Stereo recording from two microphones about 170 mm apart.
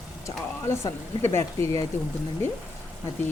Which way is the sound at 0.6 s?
15° left (ahead or behind).